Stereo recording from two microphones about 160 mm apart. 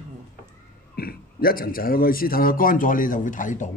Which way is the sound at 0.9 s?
70° left (ahead or behind).